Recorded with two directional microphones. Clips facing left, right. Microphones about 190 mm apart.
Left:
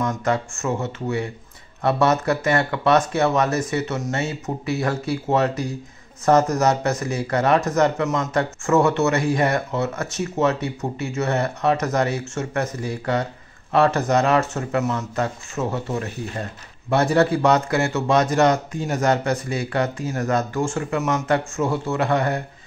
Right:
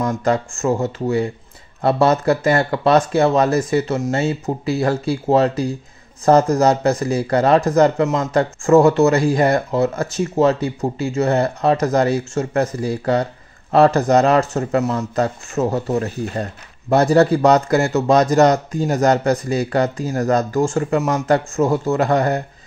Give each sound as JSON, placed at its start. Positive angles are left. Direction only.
{"t": 0.0, "sound": "speech", "side_deg": -35}